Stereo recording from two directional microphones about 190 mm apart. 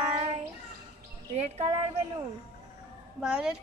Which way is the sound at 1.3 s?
35° right (ahead or behind).